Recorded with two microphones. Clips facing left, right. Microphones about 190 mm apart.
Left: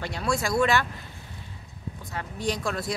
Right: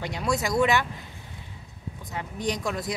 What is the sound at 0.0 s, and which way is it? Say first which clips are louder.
Speech: even; 15° right (ahead or behind).